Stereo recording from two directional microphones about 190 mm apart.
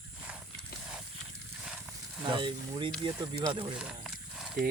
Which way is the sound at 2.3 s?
25° right (ahead or behind).